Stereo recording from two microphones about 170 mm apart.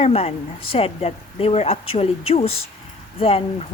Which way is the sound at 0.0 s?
35° left (ahead or behind).